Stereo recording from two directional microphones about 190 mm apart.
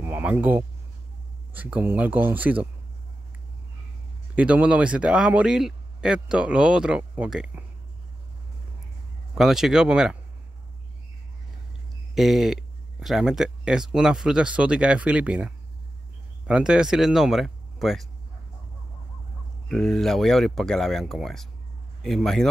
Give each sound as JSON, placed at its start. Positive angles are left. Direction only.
{"t": 0.0, "sound": "speech", "side_deg": -10}
{"t": 4.4, "sound": "speech", "side_deg": -5}
{"t": 9.3, "sound": "speech", "side_deg": 0}
{"t": 12.2, "sound": "speech", "side_deg": 0}
{"t": 19.7, "sound": "speech", "side_deg": 0}